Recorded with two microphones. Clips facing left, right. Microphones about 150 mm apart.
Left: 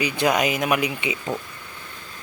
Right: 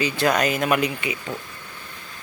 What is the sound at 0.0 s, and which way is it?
Speech, 15° left (ahead or behind).